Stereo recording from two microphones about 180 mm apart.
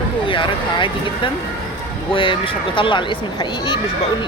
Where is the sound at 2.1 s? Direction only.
30° left (ahead or behind).